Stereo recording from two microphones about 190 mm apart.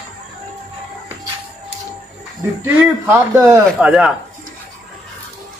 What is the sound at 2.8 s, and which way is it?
Speech, 10° right (ahead or behind).